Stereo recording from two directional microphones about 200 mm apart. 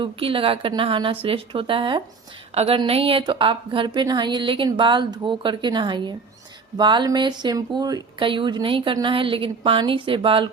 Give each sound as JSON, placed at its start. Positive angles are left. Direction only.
{"t": 0.0, "sound": "speech", "side_deg": -25}